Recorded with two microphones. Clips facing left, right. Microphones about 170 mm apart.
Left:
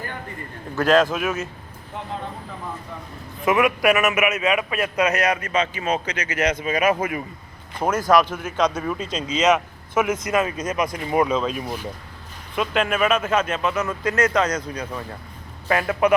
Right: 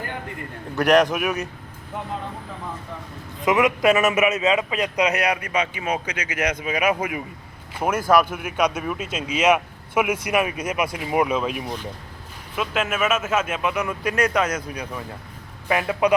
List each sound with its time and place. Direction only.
0.8 s speech: 15° right (ahead or behind)
3.4 s speech: 20° right (ahead or behind)